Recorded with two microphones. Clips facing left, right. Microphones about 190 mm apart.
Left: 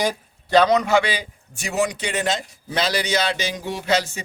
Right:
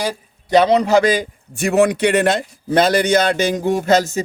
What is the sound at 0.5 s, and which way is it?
A man's voice, 25° right (ahead or behind).